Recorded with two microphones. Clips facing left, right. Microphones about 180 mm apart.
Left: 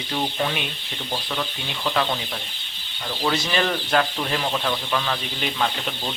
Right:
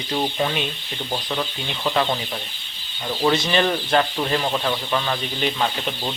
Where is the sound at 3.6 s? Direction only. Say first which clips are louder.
Right 2 dB; 10° right (ahead or behind).